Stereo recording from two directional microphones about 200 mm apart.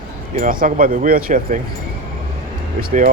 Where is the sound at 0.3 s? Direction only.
45° right (ahead or behind).